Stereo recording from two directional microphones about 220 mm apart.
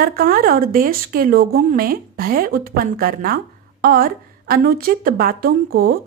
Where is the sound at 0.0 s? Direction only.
40° right (ahead or behind).